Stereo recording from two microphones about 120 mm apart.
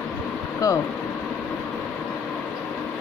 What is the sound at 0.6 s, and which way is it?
Speech, 25° left (ahead or behind).